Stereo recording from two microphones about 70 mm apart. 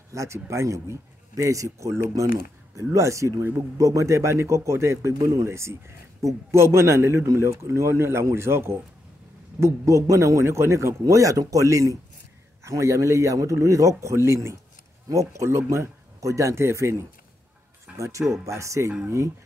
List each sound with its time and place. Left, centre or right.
0.1 s a man's voice: right
17.9 s a man's voice: right